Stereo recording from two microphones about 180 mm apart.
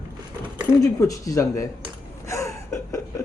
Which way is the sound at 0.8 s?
20° left (ahead or behind).